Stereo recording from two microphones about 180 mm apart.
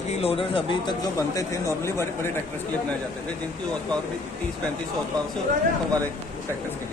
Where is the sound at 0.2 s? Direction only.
30° left (ahead or behind); by 2.3 s 15° left (ahead or behind).